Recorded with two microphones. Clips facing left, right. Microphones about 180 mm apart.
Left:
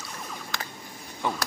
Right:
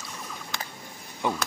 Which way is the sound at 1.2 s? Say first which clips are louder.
Right 2 dB; 15° right (ahead or behind).